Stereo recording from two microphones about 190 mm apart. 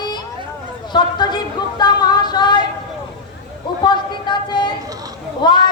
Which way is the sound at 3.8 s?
25° left (ahead or behind).